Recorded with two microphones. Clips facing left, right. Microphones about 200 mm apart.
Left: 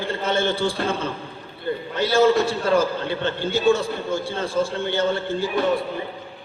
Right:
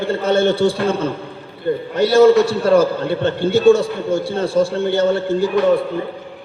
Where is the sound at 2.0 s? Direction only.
70° right (ahead or behind).